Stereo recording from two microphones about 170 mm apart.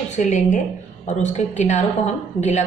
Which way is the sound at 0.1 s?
45° left (ahead or behind).